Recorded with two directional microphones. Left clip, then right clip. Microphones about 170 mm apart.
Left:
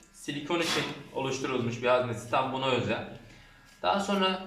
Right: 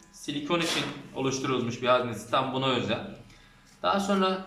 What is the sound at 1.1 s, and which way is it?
A man's voice, 5° left (ahead or behind).